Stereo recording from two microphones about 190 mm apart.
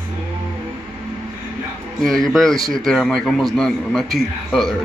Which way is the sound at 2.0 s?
Centre (ahead or behind).